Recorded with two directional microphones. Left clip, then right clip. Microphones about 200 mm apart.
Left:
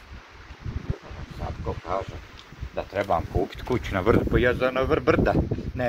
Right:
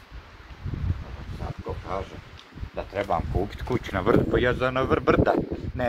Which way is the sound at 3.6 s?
30° left (ahead or behind).